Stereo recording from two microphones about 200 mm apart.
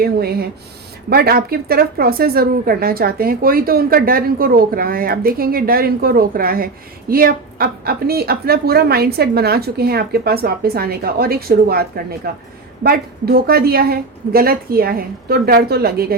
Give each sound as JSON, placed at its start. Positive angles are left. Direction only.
{"t": 0.0, "sound": "a woman's voice", "side_deg": -50}